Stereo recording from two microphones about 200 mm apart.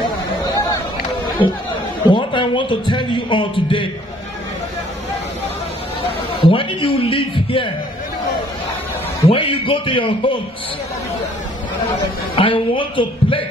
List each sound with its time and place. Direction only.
1.4 s a man's voice: 25° left (ahead or behind)
6.4 s a man's voice: 25° left (ahead or behind)
9.2 s a man's voice: 30° left (ahead or behind)
12.4 s a man's voice: 25° left (ahead or behind)